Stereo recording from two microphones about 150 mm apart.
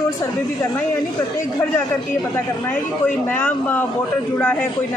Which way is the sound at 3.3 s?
15° left (ahead or behind).